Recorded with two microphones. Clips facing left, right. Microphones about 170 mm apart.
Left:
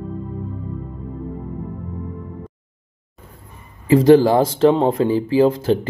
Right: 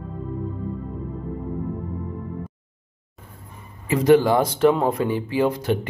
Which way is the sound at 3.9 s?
30° left (ahead or behind).